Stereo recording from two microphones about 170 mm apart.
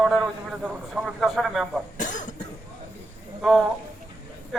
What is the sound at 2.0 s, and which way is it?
Cough, 45° left (ahead or behind).